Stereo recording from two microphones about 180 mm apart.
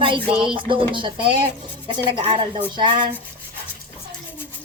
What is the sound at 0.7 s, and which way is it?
A woman's voice, 25° right (ahead or behind).